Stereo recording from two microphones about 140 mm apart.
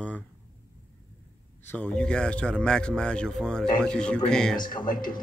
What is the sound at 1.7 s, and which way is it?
Speech, 10° left (ahead or behind).